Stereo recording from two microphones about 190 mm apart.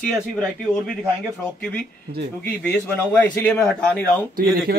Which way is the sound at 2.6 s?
10° left (ahead or behind).